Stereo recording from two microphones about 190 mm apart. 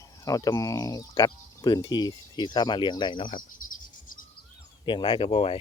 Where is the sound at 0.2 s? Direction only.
20° left (ahead or behind).